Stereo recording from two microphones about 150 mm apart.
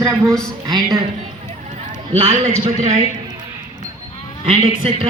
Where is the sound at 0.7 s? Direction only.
25° right (ahead or behind).